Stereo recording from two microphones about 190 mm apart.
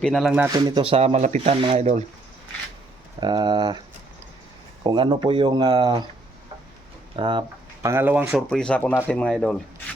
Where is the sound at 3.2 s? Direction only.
25° right (ahead or behind).